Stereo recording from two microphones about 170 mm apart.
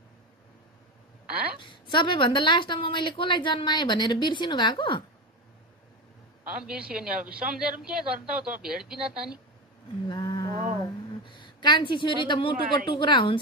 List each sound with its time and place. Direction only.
1.6 s a woman's voice: 30° left (ahead or behind)
6.6 s a man's voice: 5° right (ahead or behind)
10.0 s a sound: 25° left (ahead or behind)